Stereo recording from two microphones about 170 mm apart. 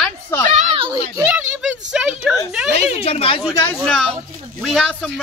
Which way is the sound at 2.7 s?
40° left (ahead or behind).